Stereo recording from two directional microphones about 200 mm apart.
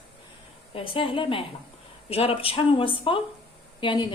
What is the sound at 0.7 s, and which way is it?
A woman's voice, 25° left (ahead or behind).